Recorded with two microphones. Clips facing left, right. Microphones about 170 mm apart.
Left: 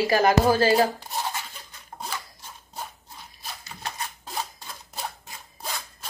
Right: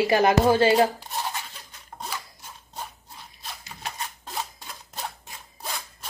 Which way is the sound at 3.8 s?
Centre (ahead or behind).